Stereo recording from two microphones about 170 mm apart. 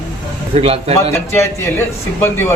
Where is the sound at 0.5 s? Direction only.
35° right (ahead or behind).